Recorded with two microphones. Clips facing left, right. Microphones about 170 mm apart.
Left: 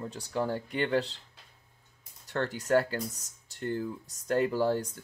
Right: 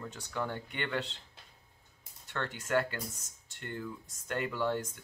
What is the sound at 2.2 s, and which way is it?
Speech, 40° left (ahead or behind).